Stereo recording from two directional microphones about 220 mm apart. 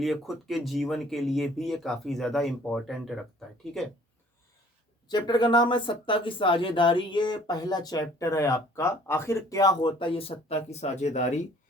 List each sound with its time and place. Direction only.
0.0 s speech: centre (ahead or behind)
5.0 s speech: 20° left (ahead or behind)